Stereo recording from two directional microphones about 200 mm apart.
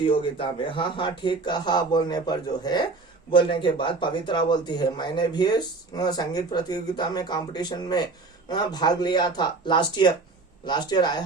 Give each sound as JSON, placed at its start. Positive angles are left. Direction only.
{"t": 0.0, "sound": "a man's voice", "side_deg": 25}